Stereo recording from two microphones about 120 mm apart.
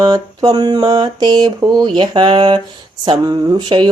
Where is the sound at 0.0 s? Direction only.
35° right (ahead or behind).